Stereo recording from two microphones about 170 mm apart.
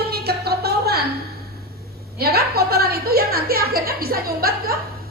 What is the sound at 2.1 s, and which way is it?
A woman's voice, 65° right (ahead or behind).